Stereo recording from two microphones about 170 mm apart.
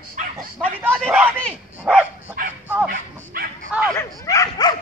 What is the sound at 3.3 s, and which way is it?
Bow-wow, 60° right (ahead or behind).